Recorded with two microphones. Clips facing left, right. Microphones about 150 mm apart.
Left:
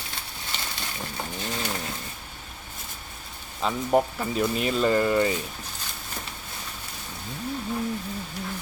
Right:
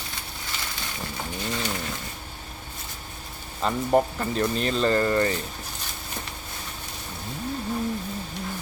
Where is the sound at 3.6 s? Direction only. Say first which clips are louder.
Right 1 dB; centre (ahead or behind).